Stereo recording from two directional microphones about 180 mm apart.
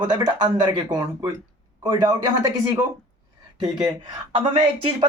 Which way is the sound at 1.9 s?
20° right (ahead or behind).